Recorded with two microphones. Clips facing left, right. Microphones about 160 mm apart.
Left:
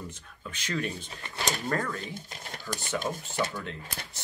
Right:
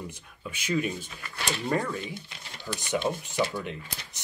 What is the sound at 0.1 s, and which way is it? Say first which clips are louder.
Speech: right 2 dB; 10° right (ahead or behind).